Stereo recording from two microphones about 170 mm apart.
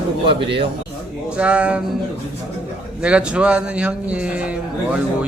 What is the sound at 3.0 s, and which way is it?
A man's voice, 5° right (ahead or behind).